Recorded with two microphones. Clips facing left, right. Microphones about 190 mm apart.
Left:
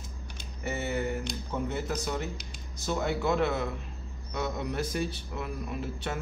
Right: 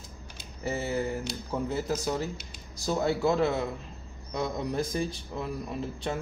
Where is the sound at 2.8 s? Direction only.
35° right (ahead or behind).